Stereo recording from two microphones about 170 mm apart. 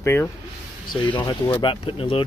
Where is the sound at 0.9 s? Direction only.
25° left (ahead or behind).